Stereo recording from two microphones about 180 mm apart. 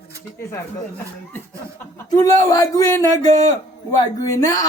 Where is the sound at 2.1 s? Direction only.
20° left (ahead or behind).